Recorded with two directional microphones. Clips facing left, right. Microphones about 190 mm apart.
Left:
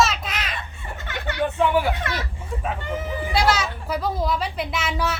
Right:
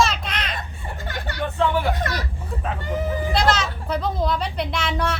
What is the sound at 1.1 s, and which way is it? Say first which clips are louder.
Speech: left 2 dB; 40° right (ahead or behind).